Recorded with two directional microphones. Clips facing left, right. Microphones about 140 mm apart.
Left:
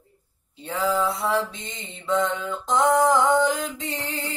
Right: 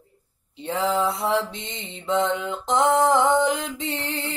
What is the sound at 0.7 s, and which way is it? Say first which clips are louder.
Mantra: right 1 dB; 25° right (ahead or behind).